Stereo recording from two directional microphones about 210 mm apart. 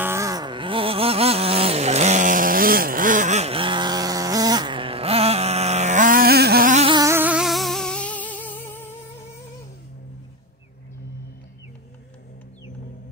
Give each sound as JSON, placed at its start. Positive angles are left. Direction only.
{"t": 0.0, "sound": "vehicle", "side_deg": -15}
{"t": 6.9, "sound": "music", "side_deg": -15}